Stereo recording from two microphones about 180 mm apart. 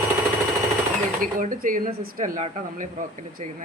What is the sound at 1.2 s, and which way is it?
A woman's voice, 50° right (ahead or behind).